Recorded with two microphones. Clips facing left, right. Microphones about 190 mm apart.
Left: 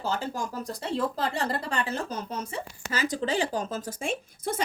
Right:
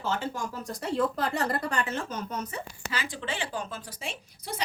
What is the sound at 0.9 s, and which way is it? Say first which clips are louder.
A woman's voice: right 1 dB; 30° left (ahead or behind).